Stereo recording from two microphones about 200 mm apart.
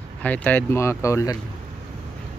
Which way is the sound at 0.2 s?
10° left (ahead or behind).